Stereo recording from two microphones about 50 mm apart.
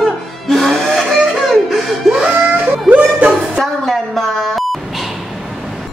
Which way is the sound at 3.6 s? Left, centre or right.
Centre.